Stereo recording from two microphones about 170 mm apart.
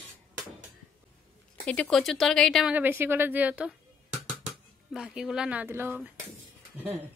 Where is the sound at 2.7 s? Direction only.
10° right (ahead or behind).